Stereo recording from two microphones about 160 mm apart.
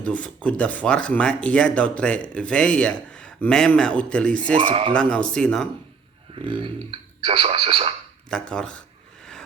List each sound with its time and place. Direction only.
0.0 s speech: 5° left (ahead or behind)
4.5 s speech: 35° right (ahead or behind)
4.9 s speech: 5° left (ahead or behind)
7.3 s speech: 35° right (ahead or behind)
8.3 s speech: 5° left (ahead or behind)